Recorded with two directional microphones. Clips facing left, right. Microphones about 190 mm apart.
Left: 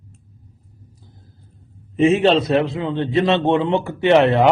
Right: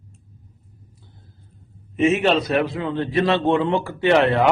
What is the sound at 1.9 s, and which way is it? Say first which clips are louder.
A man's voice: left 3 dB; 30° left (ahead or behind).